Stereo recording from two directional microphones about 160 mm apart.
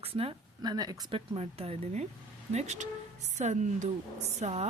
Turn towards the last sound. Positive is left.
turn(degrees=-40)  # may be behind; listen again after turning